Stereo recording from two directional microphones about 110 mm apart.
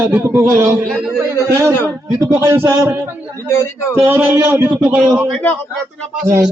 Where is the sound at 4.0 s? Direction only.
20° right (ahead or behind).